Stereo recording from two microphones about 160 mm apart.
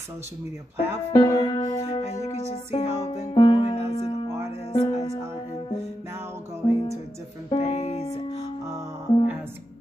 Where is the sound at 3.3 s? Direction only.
30° left (ahead or behind).